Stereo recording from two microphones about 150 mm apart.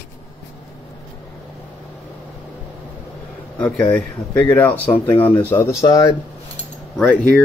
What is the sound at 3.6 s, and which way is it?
Speech, 10° left (ahead or behind).